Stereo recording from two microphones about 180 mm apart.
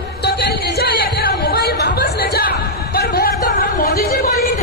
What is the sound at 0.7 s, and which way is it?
Music, 60° left (ahead or behind).